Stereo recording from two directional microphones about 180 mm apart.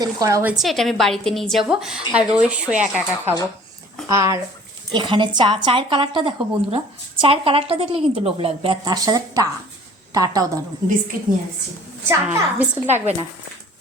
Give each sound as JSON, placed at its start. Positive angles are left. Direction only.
{"t": 0.0, "sound": "a woman's voice", "side_deg": -20}
{"t": 0.6, "sound": "a woman's voice", "side_deg": 0}
{"t": 12.0, "sound": "a woman's voice", "side_deg": -10}
{"t": 12.9, "sound": "speech", "side_deg": -35}